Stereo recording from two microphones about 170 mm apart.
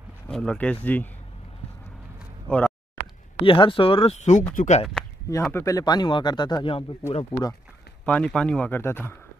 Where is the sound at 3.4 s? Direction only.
30° left (ahead or behind).